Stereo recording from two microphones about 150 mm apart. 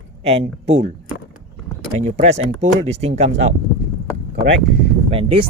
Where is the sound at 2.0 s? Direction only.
50° right (ahead or behind).